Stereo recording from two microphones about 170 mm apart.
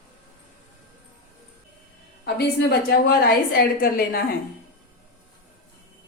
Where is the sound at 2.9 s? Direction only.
65° left (ahead or behind).